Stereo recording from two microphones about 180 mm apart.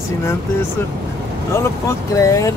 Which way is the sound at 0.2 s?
15° left (ahead or behind).